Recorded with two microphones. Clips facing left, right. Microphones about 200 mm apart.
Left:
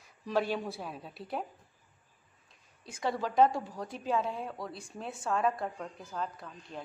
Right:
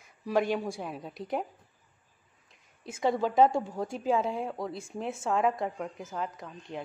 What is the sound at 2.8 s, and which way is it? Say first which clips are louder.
A woman's voice: right 6 dB; 20° right (ahead or behind).